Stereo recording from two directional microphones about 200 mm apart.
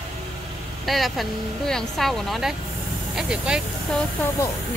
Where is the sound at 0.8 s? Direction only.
Centre (ahead or behind).